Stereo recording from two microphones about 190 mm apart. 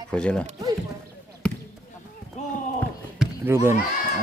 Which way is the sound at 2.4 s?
35° left (ahead or behind).